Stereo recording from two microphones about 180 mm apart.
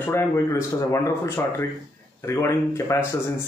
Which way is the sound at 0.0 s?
15° left (ahead or behind).